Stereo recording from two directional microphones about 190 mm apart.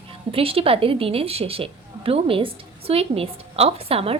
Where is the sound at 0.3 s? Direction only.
30° right (ahead or behind).